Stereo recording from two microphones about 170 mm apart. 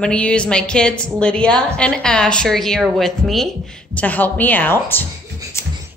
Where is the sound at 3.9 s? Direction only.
10° left (ahead or behind).